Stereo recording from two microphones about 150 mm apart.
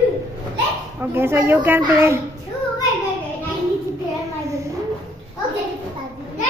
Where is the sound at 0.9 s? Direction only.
15° right (ahead or behind).